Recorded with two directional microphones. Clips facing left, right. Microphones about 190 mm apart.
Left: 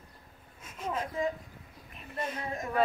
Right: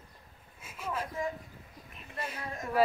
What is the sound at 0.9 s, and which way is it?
Speech, 25° left (ahead or behind).